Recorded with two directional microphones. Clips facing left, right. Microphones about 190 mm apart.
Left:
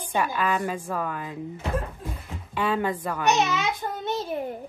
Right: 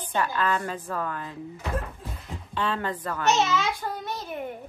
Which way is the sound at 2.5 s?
10° left (ahead or behind).